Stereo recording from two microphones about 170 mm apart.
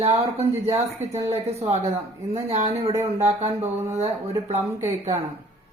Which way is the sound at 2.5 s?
40° right (ahead or behind).